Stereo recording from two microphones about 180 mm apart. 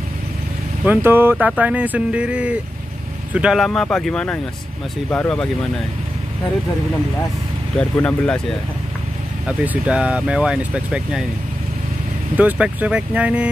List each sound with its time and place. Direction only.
0.8 s speech: 10° right (ahead or behind); by 5.7 s 5° left (ahead or behind)
7.7 s speech: 5° left (ahead or behind)
9.5 s speech: 5° right (ahead or behind)
12.4 s speech: 10° right (ahead or behind)